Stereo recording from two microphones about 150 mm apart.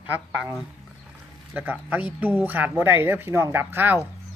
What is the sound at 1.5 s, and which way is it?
Speech, 10° right (ahead or behind).